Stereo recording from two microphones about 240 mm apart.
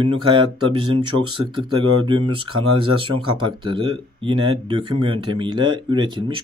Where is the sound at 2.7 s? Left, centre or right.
Right.